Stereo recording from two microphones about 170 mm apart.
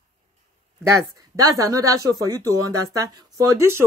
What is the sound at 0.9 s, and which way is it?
Speech, 20° right (ahead or behind).